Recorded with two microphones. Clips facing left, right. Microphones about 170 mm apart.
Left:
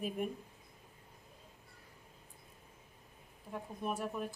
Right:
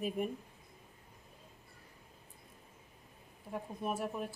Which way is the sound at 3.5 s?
5° right (ahead or behind).